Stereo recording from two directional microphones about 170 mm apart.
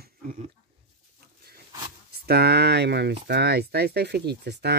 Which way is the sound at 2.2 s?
70° right (ahead or behind).